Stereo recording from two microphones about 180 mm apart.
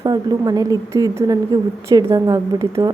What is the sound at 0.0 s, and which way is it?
A woman's voice, 20° right (ahead or behind).